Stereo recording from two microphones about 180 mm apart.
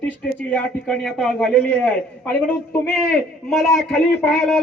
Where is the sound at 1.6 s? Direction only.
10° left (ahead or behind).